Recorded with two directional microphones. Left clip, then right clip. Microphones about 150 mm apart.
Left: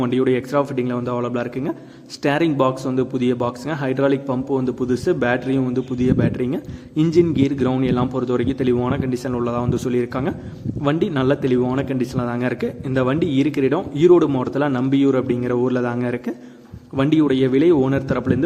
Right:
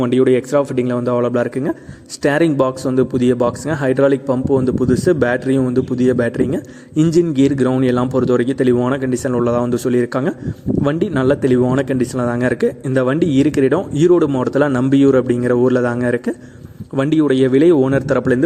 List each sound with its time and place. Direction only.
0.0 s a man's voice: 25° right (ahead or behind)